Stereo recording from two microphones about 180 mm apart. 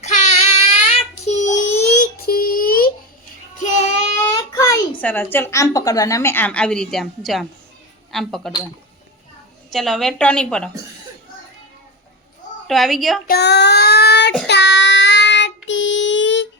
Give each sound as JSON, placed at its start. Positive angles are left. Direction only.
{"t": 0.0, "sound": "child singing", "side_deg": 40}
{"t": 4.5, "sound": "a sound", "side_deg": 15}
{"t": 4.9, "sound": "a woman's voice", "side_deg": 10}
{"t": 9.7, "sound": "a woman's voice", "side_deg": 0}
{"t": 12.6, "sound": "a woman's voice", "side_deg": 0}
{"t": 13.2, "sound": "child singing", "side_deg": 60}